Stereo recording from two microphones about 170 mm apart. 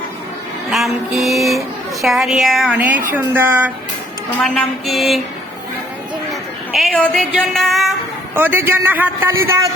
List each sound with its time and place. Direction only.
0.7 s music: centre (ahead or behind)
3.1 s a man's voice: 10° right (ahead or behind)
4.4 s music: 5° left (ahead or behind)
6.7 s a woman's voice: 5° left (ahead or behind)
8.4 s a man's voice: 10° right (ahead or behind)